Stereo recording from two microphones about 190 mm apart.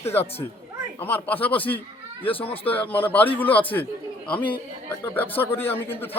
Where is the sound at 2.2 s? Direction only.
30° left (ahead or behind).